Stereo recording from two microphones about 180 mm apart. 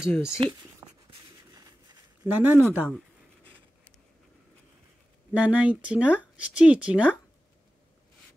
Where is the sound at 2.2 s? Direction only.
10° right (ahead or behind).